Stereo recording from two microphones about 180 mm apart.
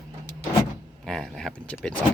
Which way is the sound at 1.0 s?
Centre (ahead or behind).